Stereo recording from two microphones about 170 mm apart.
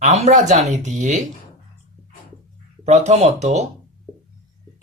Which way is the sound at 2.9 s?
40° right (ahead or behind).